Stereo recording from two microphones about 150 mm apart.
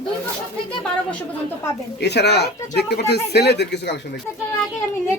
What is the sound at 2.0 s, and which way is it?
Speech, 90° left.